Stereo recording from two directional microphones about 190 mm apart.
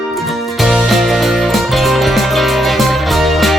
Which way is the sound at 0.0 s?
Centre (ahead or behind).